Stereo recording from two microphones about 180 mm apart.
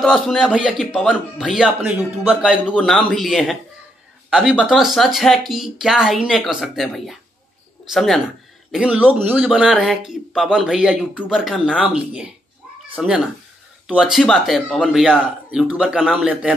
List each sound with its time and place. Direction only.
0.0 s speech: centre (ahead or behind)